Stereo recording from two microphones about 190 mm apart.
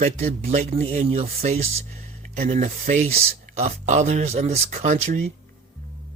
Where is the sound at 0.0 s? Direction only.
35° right (ahead or behind).